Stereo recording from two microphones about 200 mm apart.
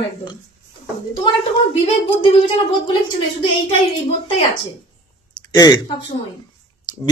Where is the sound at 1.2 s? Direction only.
25° left (ahead or behind).